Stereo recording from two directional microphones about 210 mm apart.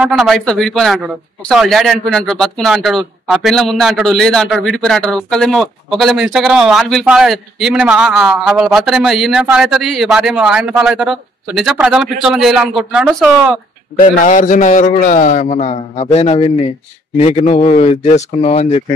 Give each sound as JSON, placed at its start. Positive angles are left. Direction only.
{"t": 0.0, "sound": "a man's voice", "side_deg": 0}
{"t": 13.9, "sound": "a man's voice", "side_deg": 35}